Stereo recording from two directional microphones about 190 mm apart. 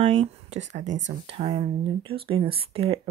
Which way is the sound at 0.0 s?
35° right (ahead or behind).